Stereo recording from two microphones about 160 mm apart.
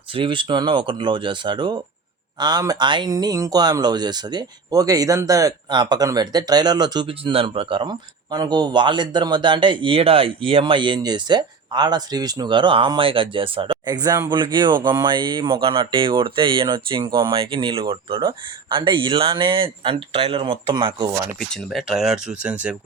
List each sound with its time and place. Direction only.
0.1 s speech: 30° right (ahead or behind)
21.3 s speech: centre (ahead or behind)